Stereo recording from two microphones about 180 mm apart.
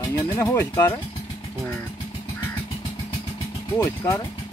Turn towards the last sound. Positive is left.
turn(degrees=15)  # may be behind; listen again after turning